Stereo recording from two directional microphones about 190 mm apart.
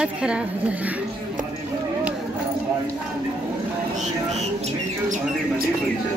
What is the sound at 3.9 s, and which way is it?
Bird, 35° right (ahead or behind).